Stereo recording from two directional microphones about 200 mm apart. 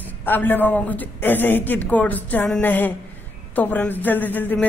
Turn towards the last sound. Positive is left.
turn(degrees=10)  # may be behind; listen again after turning